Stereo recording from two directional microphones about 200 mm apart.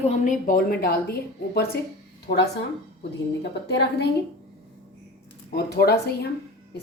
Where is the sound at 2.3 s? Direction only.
50° left (ahead or behind).